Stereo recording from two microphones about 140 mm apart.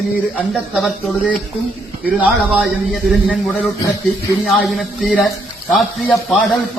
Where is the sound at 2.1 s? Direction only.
10° right (ahead or behind).